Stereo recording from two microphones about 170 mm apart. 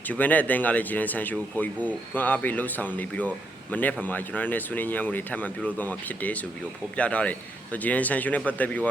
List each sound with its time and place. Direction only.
0.1 s speech: 10° left (ahead or behind)